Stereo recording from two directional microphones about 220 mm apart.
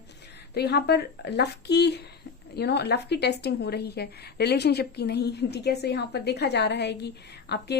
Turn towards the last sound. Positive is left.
turn(degrees=50)  # may be behind; listen again after turning